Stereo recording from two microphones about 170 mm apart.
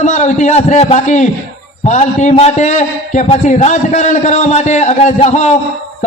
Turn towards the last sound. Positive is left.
turn(degrees=40)  # may be behind; listen again after turning